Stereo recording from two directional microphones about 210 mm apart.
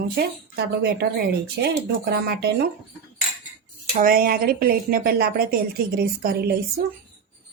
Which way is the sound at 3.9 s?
40° right (ahead or behind).